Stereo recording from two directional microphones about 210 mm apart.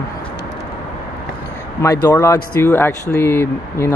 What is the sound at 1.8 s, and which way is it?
Speech, 15° left (ahead or behind).